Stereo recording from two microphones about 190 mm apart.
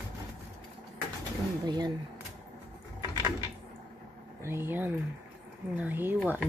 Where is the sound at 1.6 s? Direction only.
20° right (ahead or behind).